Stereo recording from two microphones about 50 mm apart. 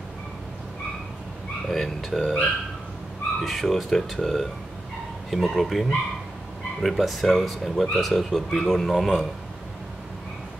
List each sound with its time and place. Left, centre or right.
1.7 s speech: centre
3.4 s speech: centre